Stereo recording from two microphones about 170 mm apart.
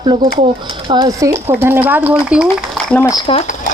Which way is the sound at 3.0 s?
25° left (ahead or behind).